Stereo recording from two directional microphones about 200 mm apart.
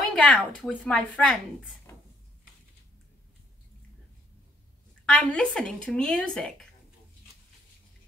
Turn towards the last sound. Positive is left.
turn(degrees=5)  # may be behind; listen again after turning